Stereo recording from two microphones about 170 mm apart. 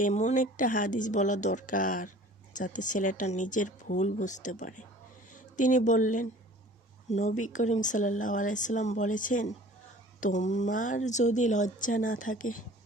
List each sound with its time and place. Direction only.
0.0 s speech: 45° left (ahead or behind)